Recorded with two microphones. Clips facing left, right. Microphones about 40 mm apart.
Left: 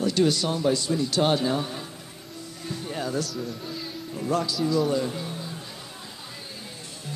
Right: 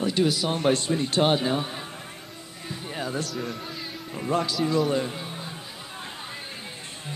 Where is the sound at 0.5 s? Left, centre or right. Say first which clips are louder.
Right 1 dB; right.